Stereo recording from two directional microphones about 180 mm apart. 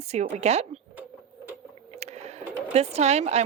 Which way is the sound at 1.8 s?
35° right (ahead or behind).